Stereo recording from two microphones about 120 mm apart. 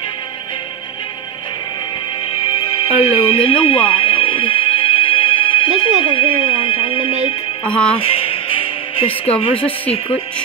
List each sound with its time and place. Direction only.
2.3 s music: 50° left (ahead or behind)
7.6 s speech: 10° left (ahead or behind)
8.0 s music: 50° left (ahead or behind)
9.6 s speech: 10° left (ahead or behind)